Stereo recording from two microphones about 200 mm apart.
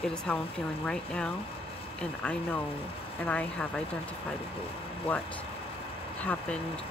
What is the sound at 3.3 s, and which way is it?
Speech, 5° left (ahead or behind).